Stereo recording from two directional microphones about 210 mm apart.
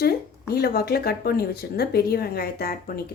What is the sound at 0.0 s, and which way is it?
Speech, 50° left (ahead or behind).